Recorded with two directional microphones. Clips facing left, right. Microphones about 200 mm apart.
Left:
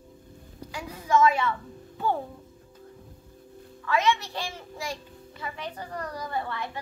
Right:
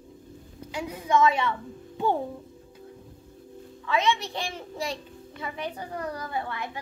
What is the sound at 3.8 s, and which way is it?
A child's voice, 20° right (ahead or behind).